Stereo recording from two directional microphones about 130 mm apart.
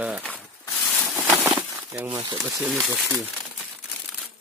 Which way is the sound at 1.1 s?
15° right (ahead or behind).